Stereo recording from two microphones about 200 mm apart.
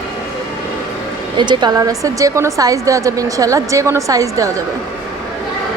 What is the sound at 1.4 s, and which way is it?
A woman's voice, 20° right (ahead or behind).